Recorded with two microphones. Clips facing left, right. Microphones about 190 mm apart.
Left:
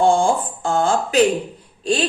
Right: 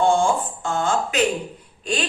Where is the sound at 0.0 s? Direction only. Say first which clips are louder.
Left 2 dB; 35° left (ahead or behind).